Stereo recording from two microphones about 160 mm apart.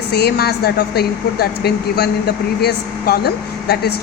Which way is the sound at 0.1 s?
85° left.